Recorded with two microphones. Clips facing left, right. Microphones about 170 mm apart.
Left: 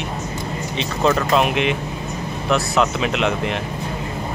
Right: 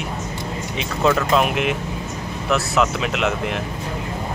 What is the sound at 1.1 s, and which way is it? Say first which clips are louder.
Speech: even; centre (ahead or behind).